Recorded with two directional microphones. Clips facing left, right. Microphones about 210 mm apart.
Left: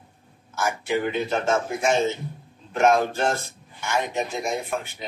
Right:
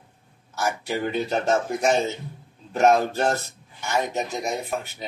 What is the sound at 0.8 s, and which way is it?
Speech, 40° right (ahead or behind).